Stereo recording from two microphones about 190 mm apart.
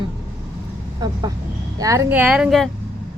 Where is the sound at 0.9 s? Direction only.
20° right (ahead or behind).